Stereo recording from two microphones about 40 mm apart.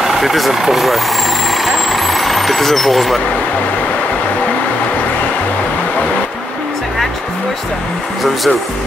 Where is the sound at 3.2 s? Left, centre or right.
Left.